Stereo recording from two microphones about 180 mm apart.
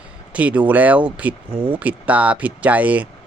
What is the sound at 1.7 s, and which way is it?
Speech, 10° right (ahead or behind).